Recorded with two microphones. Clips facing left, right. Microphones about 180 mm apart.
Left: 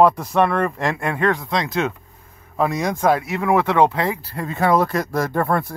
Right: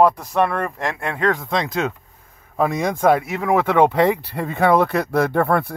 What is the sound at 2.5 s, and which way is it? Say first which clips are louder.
Speech: right 1 dB; 50° right (ahead or behind).